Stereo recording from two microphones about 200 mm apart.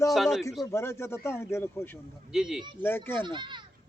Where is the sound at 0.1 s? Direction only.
Centre (ahead or behind).